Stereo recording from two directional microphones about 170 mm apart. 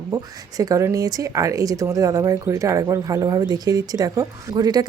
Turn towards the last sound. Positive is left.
turn(degrees=-25)  # may be behind; listen again after turning